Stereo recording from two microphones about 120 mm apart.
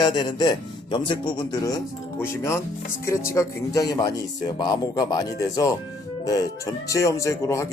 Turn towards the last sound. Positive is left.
turn(degrees=25)  # may be behind; listen again after turning